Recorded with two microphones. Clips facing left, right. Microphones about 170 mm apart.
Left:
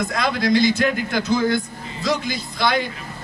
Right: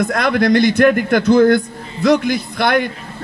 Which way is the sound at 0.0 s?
60° right (ahead or behind).